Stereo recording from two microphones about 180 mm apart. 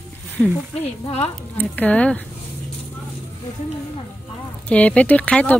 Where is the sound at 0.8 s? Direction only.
35° left (ahead or behind).